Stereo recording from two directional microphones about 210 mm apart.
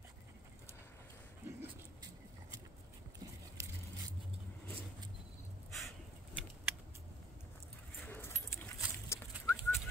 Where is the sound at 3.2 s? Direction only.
20° right (ahead or behind).